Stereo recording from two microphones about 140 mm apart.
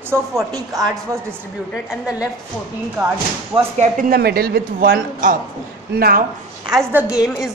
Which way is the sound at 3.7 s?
65° right (ahead or behind).